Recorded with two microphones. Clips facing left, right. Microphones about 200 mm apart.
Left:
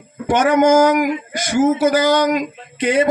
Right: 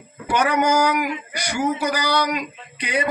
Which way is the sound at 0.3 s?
45° left (ahead or behind).